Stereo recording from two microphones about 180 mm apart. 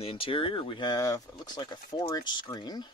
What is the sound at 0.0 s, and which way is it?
Speech, 30° left (ahead or behind).